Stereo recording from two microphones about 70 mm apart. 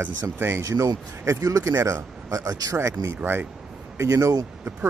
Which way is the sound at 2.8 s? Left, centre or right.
Right.